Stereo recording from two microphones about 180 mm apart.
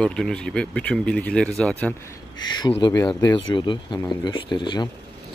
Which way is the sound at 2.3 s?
25° left (ahead or behind).